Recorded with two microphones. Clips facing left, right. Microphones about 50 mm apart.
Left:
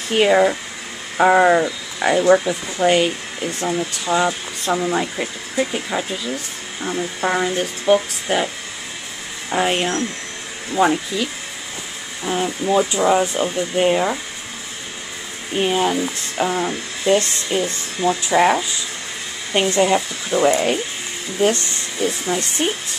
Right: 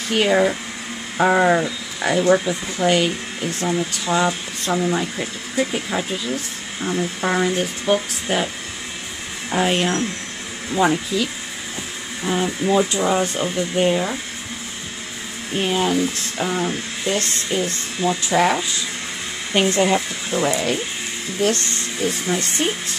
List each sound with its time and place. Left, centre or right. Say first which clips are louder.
0.1 s speech: left 3 dB; centre
9.5 s speech: even; centre
12.3 s speech: even; centre
15.5 s speech: left 1 dB; centre
17.0 s speech: left 7 dB; left
18.0 s speech: left 2 dB; left
18.3 s speech: left 3 dB; centre
19.7 s speech: left 3 dB; centre
20.2 s speech: left 5 dB; left
22.0 s speech: left 1 dB; centre